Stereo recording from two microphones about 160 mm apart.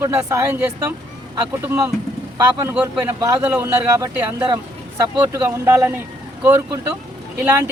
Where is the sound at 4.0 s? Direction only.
20° right (ahead or behind).